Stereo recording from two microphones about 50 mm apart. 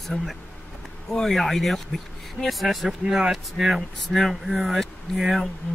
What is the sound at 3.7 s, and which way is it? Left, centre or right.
Speech, centre.